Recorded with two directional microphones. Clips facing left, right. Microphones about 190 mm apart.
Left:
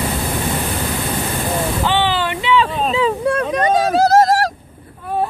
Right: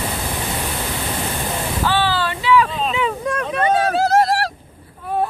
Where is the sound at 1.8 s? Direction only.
20° left (ahead or behind); by 4.5 s 45° left (ahead or behind).